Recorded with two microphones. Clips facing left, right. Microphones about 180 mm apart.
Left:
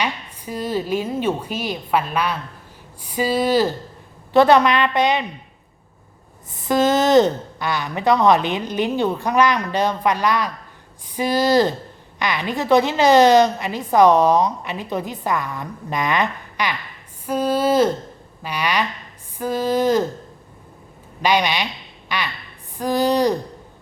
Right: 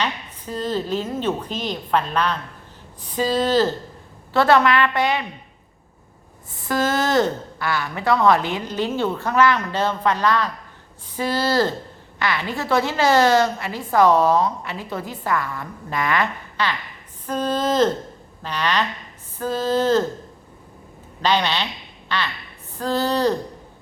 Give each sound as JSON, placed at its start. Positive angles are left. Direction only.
{"t": 0.0, "sound": "a woman's voice", "side_deg": 10}
{"t": 6.5, "sound": "a woman's voice", "side_deg": 20}
{"t": 21.2, "sound": "a woman's voice", "side_deg": 10}